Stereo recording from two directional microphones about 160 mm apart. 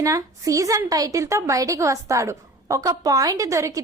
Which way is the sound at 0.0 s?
20° right (ahead or behind).